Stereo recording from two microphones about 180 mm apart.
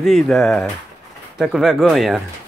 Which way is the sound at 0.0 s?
5° left (ahead or behind).